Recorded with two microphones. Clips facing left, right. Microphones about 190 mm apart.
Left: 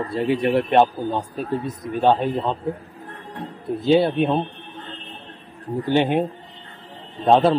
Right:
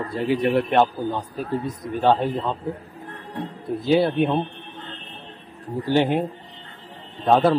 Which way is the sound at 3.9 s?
25° left (ahead or behind).